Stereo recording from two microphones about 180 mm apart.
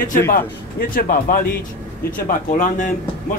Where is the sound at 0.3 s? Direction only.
50° left (ahead or behind).